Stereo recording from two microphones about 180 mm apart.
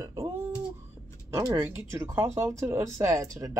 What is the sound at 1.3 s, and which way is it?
Speech, 15° right (ahead or behind).